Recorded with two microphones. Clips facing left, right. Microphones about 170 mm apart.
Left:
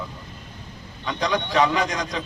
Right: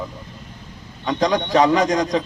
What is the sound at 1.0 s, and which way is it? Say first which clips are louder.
A man's voice: right 5 dB; 45° right (ahead or behind).